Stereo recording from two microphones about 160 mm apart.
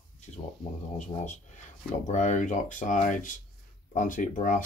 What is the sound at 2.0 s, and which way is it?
Speech, 50° left (ahead or behind).